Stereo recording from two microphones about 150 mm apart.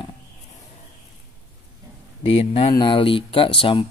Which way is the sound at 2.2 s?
40° left (ahead or behind).